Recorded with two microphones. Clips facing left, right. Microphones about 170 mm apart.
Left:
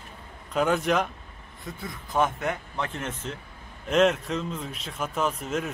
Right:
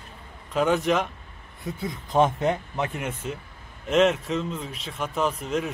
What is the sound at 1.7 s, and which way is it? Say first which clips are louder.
Speech: right 6 dB; 20° right (ahead or behind).